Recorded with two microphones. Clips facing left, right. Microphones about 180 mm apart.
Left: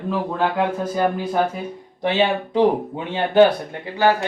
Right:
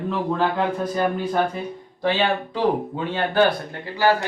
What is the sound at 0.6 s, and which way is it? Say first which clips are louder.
Speech: left 2 dB; 5° left (ahead or behind).